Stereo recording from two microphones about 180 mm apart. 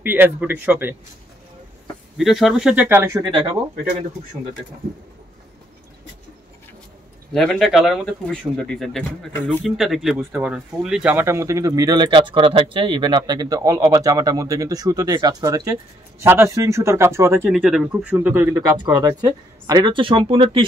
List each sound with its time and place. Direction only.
0.0 s speech: 10° right (ahead or behind)
2.1 s speech: centre (ahead or behind)
3.3 s speech: 25° right (ahead or behind)
7.3 s speech: centre (ahead or behind)
9.8 s speech: centre (ahead or behind)
17.5 s speech: 5° right (ahead or behind); by 20.6 s 30° right (ahead or behind)